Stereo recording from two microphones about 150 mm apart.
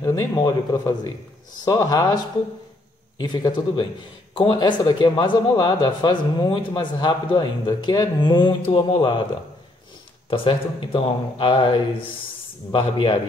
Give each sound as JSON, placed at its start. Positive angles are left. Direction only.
{"t": 0.0, "sound": "speech", "side_deg": 20}
{"t": 3.2, "sound": "speech", "side_deg": 30}
{"t": 10.3, "sound": "speech", "side_deg": 35}